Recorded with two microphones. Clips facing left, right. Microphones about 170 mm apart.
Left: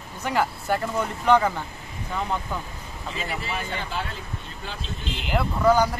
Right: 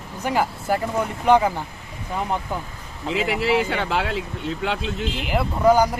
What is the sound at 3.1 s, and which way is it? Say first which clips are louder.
Speech: right 11 dB; 90° right.